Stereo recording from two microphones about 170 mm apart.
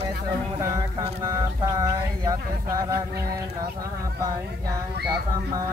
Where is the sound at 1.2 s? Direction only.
20° right (ahead or behind).